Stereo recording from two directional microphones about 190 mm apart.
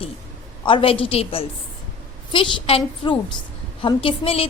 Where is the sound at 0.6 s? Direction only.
25° left (ahead or behind).